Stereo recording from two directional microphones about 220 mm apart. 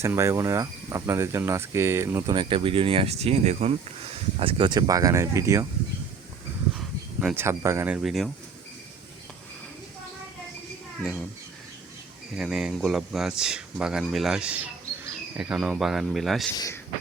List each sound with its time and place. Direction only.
0.0 s cricket: 10° right (ahead or behind)
6.7 s speech: 5° right (ahead or behind)
12.4 s speech: centre (ahead or behind)
16.6 s speech: 15° left (ahead or behind)